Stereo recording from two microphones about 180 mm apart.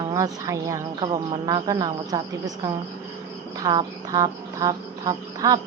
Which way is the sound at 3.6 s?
25° right (ahead or behind).